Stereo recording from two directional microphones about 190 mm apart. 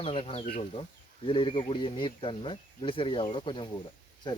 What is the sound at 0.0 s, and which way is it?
Speech, 30° left (ahead or behind).